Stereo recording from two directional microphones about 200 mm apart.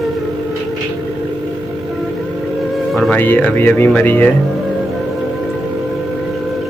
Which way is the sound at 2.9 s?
5° left (ahead or behind).